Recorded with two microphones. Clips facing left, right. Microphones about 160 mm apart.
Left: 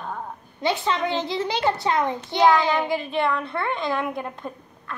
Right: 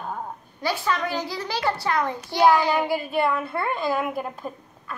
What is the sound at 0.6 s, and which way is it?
A child's voice, 25° left (ahead or behind).